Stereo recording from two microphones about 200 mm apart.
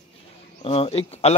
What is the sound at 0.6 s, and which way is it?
Speech, 30° left (ahead or behind).